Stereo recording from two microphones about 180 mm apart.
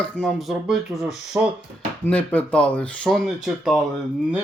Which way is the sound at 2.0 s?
10° left (ahead or behind).